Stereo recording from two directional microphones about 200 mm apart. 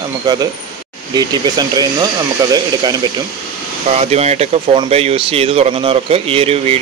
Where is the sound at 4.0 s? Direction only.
30° right (ahead or behind).